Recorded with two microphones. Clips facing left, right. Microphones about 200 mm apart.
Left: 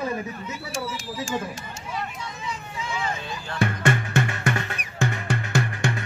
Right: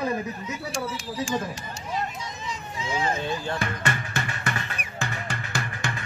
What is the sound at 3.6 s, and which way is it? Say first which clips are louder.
Music: left 6 dB; 50° left (ahead or behind).